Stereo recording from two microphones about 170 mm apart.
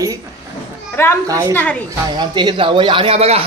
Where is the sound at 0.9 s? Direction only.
15° left (ahead or behind).